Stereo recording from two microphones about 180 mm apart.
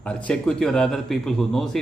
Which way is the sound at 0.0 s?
5° left (ahead or behind).